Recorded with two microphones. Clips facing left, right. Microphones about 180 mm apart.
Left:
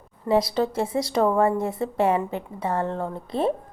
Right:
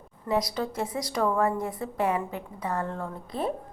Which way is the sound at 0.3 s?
30° left (ahead or behind).